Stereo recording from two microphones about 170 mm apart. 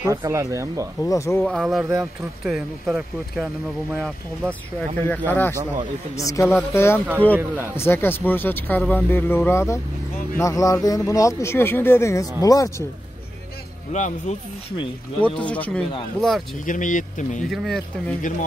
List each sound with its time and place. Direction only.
0.0 s speech: 15° right (ahead or behind)
1.0 s speech: 20° left (ahead or behind)
1.4 s speech: centre (ahead or behind)
5.3 s speech: 10° left (ahead or behind)
7.3 s speech: 15° right (ahead or behind)
7.7 s speech: 15° left (ahead or behind)
13.9 s speech: 45° left (ahead or behind)
15.1 s speech: 10° left (ahead or behind)
16.6 s speech: 50° left (ahead or behind)
17.5 s speech: 5° left (ahead or behind)